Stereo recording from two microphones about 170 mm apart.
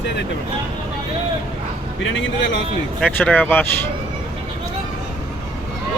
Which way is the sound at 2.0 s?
90° left.